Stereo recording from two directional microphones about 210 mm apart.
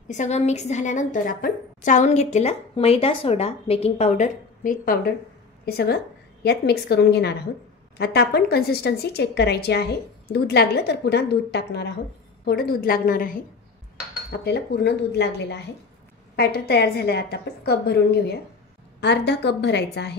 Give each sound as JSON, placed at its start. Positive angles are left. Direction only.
{"t": 0.1, "sound": "a woman's voice", "side_deg": 35}
{"t": 14.4, "sound": "a woman's voice", "side_deg": 50}